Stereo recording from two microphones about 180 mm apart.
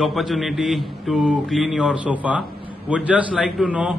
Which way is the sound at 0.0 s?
Centre (ahead or behind).